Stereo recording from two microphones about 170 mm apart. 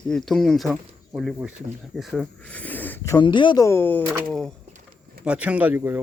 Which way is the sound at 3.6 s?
15° left (ahead or behind).